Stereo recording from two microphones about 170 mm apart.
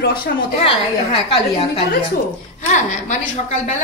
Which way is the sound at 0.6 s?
35° left (ahead or behind).